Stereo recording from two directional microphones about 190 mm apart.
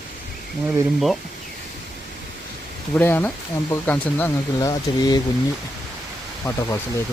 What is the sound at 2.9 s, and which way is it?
Speech, 10° left (ahead or behind).